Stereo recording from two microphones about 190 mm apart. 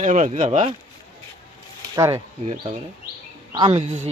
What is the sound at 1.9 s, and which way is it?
Speech, 15° right (ahead or behind).